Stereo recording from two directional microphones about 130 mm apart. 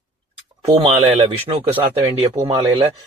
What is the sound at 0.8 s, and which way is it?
Speech, 50° right (ahead or behind).